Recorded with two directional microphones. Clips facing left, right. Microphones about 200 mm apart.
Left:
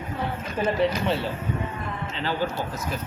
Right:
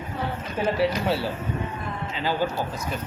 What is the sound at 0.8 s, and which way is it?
Speech, 5° right (ahead or behind).